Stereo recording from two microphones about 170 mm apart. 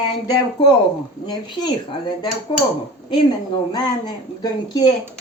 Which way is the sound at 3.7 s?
25° left (ahead or behind).